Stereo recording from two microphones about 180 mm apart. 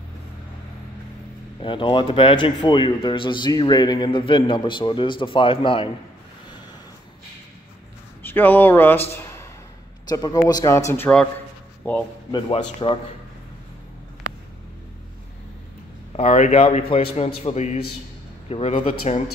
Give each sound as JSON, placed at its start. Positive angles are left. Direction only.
{"t": 1.6, "sound": "a man's voice", "side_deg": 25}
{"t": 8.3, "sound": "speech", "side_deg": 10}
{"t": 9.1, "sound": "a sound", "side_deg": 15}
{"t": 10.0, "sound": "a man's voice", "side_deg": 20}
{"t": 12.3, "sound": "a man's voice", "side_deg": 25}
{"t": 16.2, "sound": "speech", "side_deg": 35}